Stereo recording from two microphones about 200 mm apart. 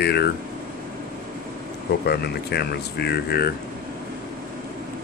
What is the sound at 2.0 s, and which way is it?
Speech, 55° left (ahead or behind).